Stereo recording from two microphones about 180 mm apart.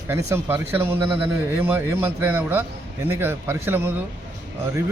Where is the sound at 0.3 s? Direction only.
15° right (ahead or behind).